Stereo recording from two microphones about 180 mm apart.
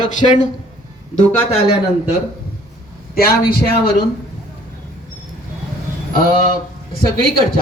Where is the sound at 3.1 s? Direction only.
55° left (ahead or behind).